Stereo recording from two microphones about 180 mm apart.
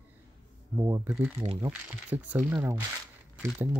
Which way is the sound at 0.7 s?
20° right (ahead or behind).